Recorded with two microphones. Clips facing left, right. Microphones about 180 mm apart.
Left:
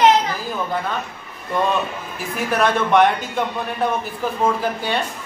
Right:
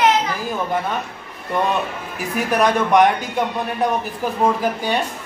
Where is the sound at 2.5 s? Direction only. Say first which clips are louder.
Right 1 dB; 15° right (ahead or behind).